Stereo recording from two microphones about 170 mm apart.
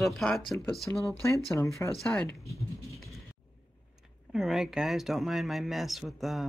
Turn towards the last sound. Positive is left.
turn(degrees=0)  # may be behind; listen again after turning